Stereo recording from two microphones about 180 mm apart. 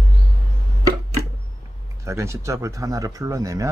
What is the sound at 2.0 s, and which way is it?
Speech, 15° right (ahead or behind).